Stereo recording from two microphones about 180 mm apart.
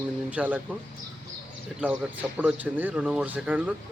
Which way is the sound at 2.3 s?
10° right (ahead or behind).